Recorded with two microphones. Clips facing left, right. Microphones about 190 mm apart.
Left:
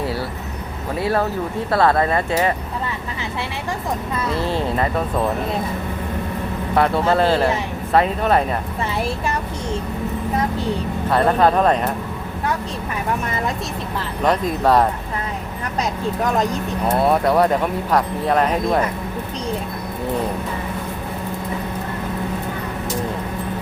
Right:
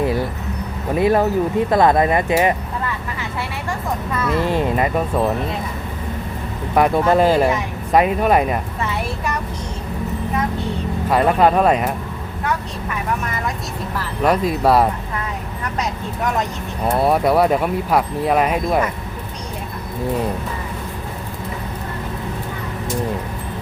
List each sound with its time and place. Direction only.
0.0 s music: 15° right (ahead or behind)
0.9 s speech: 15° right (ahead or behind)
4.4 s speech: 15° right (ahead or behind)
6.7 s speech: 15° right (ahead or behind)
8.8 s a sound: 25° left (ahead or behind)
11.1 s speech: 10° right (ahead or behind)
14.3 s speech: 10° right (ahead or behind)
16.9 s speech: 10° right (ahead or behind)